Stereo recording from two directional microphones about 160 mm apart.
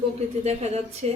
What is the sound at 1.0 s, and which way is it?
Speech, 40° right (ahead or behind).